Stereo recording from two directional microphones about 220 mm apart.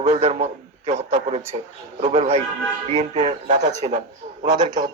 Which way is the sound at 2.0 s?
30° right (ahead or behind).